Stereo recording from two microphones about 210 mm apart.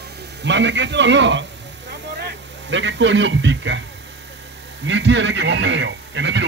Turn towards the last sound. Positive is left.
turn(degrees=-60)  # may be behind; listen again after turning